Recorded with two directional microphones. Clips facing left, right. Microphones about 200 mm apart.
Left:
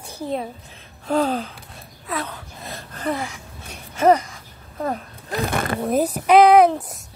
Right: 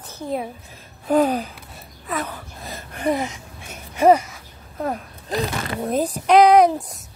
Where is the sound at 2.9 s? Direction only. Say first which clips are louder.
Right 4 dB; 15° right (ahead or behind).